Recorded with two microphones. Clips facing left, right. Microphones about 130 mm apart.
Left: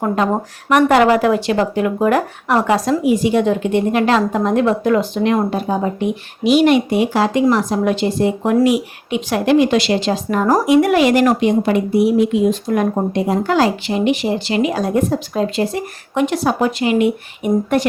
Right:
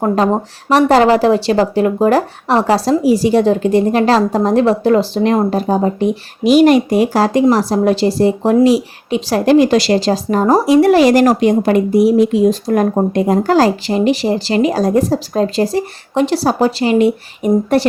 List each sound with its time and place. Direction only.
0.7 s speech: 30° right (ahead or behind)